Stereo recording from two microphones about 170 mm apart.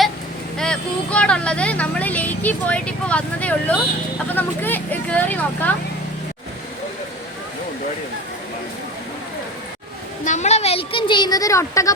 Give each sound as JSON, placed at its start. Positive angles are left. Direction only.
{"t": 0.6, "sound": "speech", "side_deg": 5}
{"t": 10.2, "sound": "speech", "side_deg": 45}